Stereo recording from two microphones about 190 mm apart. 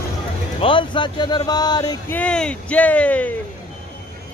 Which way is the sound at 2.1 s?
5° left (ahead or behind).